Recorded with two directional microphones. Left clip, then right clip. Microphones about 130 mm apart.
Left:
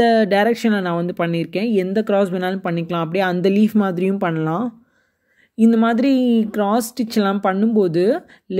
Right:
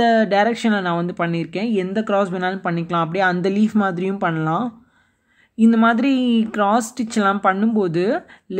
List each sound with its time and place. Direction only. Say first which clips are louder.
0.0 s speech: left 1 dB; 30° left (ahead or behind)